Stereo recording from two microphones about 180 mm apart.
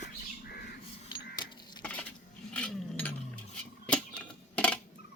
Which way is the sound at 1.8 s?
10° left (ahead or behind).